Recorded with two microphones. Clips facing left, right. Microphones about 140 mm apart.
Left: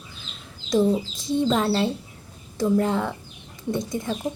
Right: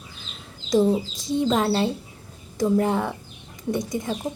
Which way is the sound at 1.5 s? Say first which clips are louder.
Right 1 dB; 20° right (ahead or behind).